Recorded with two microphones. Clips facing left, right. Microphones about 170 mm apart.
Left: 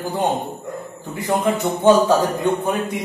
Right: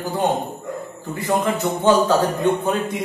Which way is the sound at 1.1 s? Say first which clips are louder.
Left 1 dB; 15° left (ahead or behind).